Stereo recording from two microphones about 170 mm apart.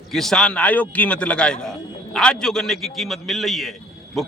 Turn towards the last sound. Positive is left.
turn(degrees=0)  # may be behind; listen again after turning